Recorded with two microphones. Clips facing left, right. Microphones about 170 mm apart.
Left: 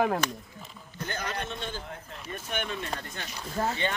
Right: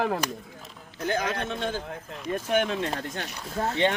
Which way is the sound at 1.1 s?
90° right.